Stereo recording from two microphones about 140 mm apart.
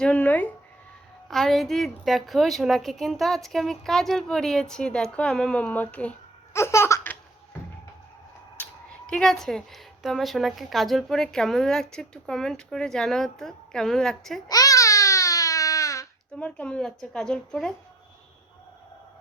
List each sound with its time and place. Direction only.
0.0 s speech: 10° left (ahead or behind)
1.3 s a woman's voice: centre (ahead or behind)
8.5 s a woman's voice: 10° left (ahead or behind)
14.4 s baby cry: 25° left (ahead or behind)
16.4 s a woman's voice: 10° left (ahead or behind)